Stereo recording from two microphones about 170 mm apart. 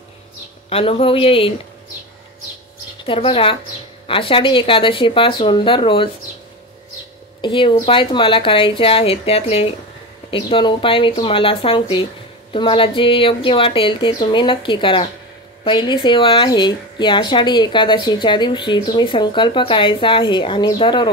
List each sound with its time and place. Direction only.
0.7 s speech: 35° left (ahead or behind)
3.1 s speech: 30° left (ahead or behind)
7.4 s a woman's voice: 30° left (ahead or behind)